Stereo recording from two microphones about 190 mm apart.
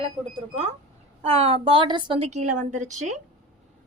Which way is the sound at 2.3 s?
40° right (ahead or behind).